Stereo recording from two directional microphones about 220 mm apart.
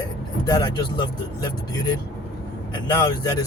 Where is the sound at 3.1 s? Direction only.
20° left (ahead or behind).